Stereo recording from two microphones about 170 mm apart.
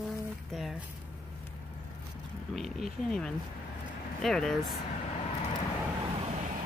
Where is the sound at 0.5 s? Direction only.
Centre (ahead or behind).